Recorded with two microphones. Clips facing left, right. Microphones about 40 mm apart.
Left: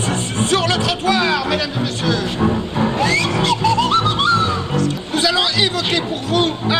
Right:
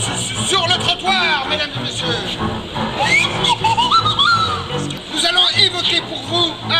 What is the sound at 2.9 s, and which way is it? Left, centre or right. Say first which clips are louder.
Music: right 5 dB; right.